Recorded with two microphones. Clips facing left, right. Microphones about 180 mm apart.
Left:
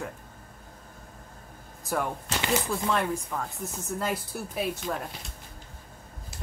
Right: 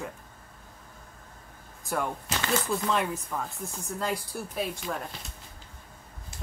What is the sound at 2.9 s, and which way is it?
Speech, centre (ahead or behind).